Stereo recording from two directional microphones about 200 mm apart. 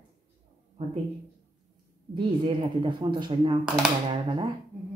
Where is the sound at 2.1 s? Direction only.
25° right (ahead or behind).